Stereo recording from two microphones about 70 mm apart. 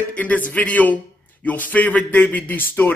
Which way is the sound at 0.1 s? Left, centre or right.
Left.